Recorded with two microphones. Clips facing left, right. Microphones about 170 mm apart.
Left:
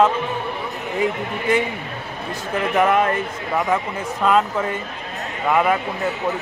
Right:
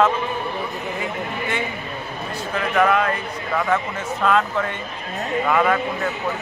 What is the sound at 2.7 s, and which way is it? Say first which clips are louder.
Speech: left 1 dB; 20° left (ahead or behind).